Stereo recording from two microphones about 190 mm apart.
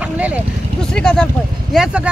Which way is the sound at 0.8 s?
5° left (ahead or behind).